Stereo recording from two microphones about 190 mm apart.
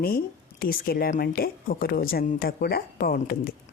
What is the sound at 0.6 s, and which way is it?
A woman's voice, 50° left (ahead or behind).